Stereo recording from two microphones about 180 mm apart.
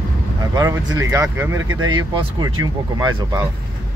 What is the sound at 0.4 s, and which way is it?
Speech, 20° right (ahead or behind).